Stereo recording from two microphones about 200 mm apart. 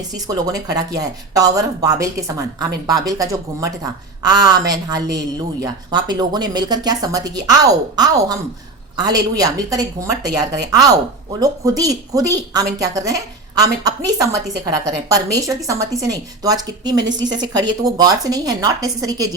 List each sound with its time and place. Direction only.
0.1 s a woman's voice: 20° right (ahead or behind)